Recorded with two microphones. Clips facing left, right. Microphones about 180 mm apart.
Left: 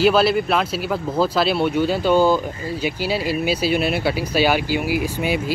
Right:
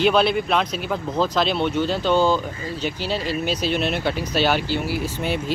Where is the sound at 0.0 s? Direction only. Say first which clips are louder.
Left 2 dB; 5° left (ahead or behind).